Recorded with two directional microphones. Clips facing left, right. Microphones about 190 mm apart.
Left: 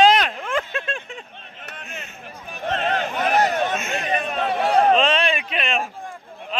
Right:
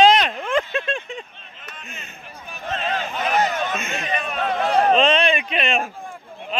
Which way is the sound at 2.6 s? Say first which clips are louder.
Left 3 dB; 60° left (ahead or behind).